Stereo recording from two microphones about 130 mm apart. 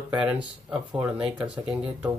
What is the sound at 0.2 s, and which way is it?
Speech, 10° right (ahead or behind).